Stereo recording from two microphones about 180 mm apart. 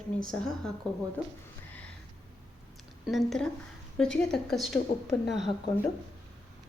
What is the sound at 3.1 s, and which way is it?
Speech, centre (ahead or behind).